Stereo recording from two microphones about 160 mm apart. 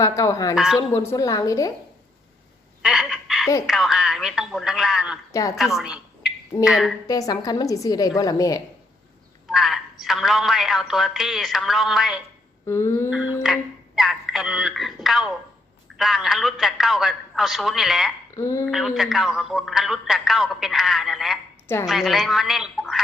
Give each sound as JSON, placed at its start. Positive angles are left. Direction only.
{"t": 0.0, "sound": "a woman's voice", "side_deg": 20}
{"t": 0.5, "sound": "a woman's voice", "side_deg": 0}
{"t": 0.8, "sound": "a woman's voice", "side_deg": 20}
{"t": 2.8, "sound": "fowl", "side_deg": 0}
{"t": 3.7, "sound": "a woman's voice", "side_deg": 0}
{"t": 5.3, "sound": "a woman's voice", "side_deg": 20}
{"t": 5.5, "sound": "a woman's voice", "side_deg": 0}
{"t": 7.1, "sound": "a woman's voice", "side_deg": 20}
{"t": 9.5, "sound": "a woman's voice", "side_deg": 0}
{"t": 12.6, "sound": "a sound", "side_deg": 15}
{"t": 13.4, "sound": "a woman's voice", "side_deg": 0}
{"t": 18.3, "sound": "a sound", "side_deg": 20}
{"t": 18.7, "sound": "a woman's voice", "side_deg": 0}